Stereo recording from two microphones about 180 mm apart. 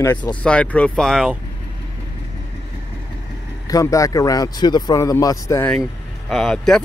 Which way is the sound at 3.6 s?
20° left (ahead or behind).